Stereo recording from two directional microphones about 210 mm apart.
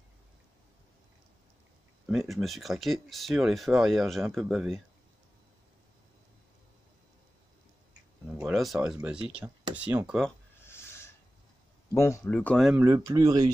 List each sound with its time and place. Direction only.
2.0 s speech: centre (ahead or behind)
8.4 s speech: centre (ahead or behind)
11.9 s speech: 15° left (ahead or behind)
12.8 s speech: 15° right (ahead or behind)